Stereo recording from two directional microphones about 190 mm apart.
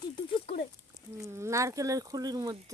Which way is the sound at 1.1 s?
15° right (ahead or behind).